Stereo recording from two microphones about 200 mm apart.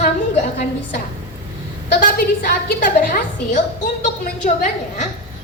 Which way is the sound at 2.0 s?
50° left (ahead or behind).